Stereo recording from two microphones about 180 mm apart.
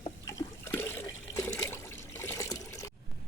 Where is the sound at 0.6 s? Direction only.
15° left (ahead or behind).